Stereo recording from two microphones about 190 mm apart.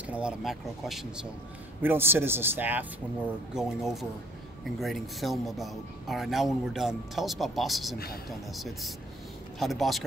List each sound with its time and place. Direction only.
0.0 s a man's voice: 5° right (ahead or behind)